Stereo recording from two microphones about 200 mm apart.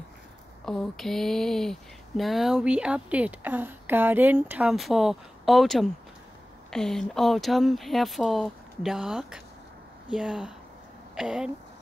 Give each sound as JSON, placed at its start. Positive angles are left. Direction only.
{"t": 0.7, "sound": "speech", "side_deg": 0}